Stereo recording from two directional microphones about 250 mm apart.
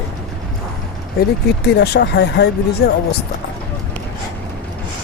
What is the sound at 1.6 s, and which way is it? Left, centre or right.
Speech, left.